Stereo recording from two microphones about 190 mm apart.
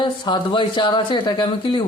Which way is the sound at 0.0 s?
25° left (ahead or behind).